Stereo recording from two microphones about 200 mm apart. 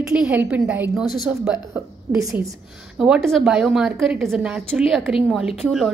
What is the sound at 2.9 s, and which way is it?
A woman's voice, 5° right (ahead or behind).